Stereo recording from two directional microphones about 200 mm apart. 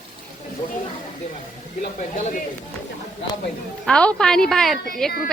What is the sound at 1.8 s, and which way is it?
Speech, 40° left (ahead or behind).